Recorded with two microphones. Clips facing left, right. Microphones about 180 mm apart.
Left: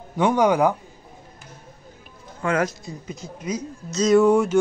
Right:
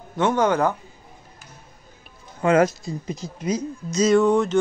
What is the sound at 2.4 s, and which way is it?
Speech, 25° right (ahead or behind).